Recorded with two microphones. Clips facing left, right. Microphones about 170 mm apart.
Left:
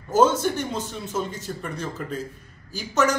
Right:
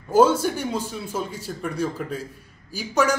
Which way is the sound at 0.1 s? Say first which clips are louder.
Right 2 dB; 10° right (ahead or behind).